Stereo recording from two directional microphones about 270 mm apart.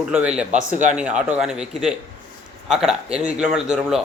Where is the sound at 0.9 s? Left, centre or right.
Centre.